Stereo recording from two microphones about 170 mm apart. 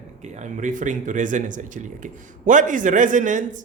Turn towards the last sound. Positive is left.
turn(degrees=-50)  # may be behind; listen again after turning